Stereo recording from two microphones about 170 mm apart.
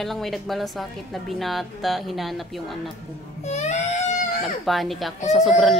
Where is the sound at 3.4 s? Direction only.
40° left (ahead or behind).